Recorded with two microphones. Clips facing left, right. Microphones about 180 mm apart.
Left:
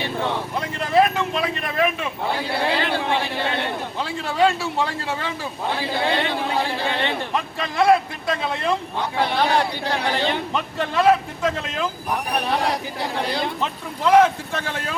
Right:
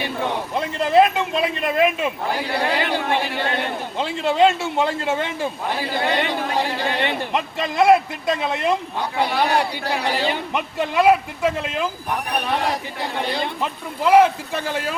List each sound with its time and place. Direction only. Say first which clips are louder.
0.9 s a man's voice: right 2 dB; 20° right (ahead or behind)
3.9 s a man's voice: right 7 dB; 25° right (ahead or behind)